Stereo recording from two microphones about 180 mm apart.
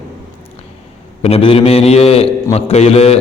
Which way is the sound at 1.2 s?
30° left (ahead or behind).